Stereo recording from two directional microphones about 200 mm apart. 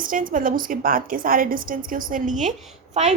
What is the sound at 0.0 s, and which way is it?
A woman's voice, 45° right (ahead or behind).